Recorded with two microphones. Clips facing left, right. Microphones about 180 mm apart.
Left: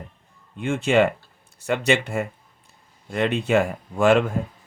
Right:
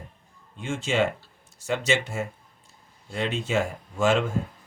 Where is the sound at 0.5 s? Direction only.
60° left (ahead or behind).